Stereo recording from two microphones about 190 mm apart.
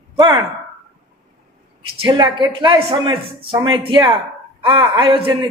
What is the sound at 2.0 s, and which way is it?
Speech, 25° right (ahead or behind).